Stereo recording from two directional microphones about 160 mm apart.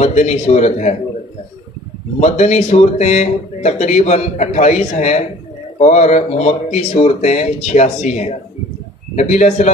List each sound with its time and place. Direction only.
0.0 s a man's voice: 45° left (ahead or behind)
2.1 s a man's voice: 45° left (ahead or behind)